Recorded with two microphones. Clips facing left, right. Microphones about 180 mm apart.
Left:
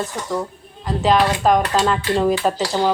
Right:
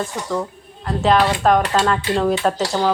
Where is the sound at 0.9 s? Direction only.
Centre (ahead or behind).